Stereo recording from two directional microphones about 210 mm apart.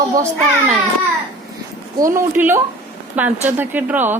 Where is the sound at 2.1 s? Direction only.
10° right (ahead or behind).